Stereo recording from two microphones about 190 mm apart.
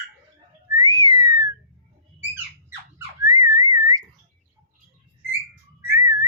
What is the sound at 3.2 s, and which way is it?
Whistling, 15° right (ahead or behind).